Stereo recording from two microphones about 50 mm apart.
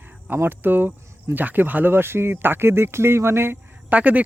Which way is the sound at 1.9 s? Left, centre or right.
Right.